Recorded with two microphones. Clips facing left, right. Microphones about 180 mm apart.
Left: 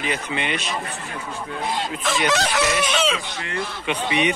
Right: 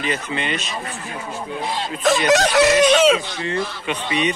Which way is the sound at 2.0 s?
45° right (ahead or behind).